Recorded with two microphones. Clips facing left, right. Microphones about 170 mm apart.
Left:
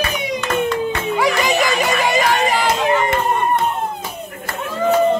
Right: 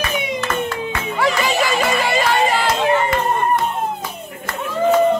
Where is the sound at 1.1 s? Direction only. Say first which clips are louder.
Even; 15° left (ahead or behind).